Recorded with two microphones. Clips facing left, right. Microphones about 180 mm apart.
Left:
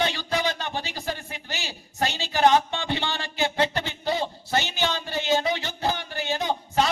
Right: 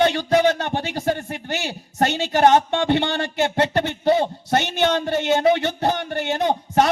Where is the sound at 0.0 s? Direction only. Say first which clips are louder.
Right 9 dB; 60° right (ahead or behind).